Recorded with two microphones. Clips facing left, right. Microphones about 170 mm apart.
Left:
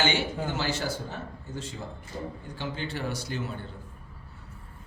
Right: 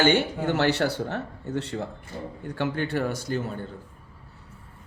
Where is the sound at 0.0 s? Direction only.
55° right (ahead or behind).